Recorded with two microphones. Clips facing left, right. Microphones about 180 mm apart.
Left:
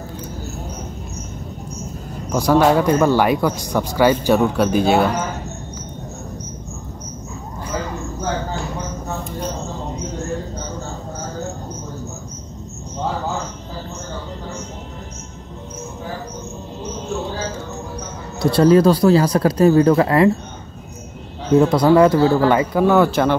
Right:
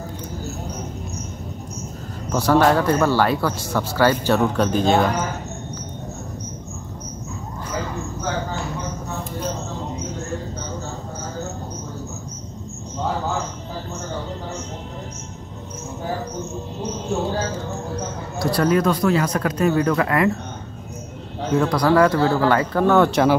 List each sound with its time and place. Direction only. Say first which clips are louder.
2.2 s speech: left 2 dB; 10° left (ahead or behind)
18.4 s speech: left 6 dB; 25° left (ahead or behind)
21.5 s speech: left 4 dB; 25° left (ahead or behind); by 23.3 s centre (ahead or behind)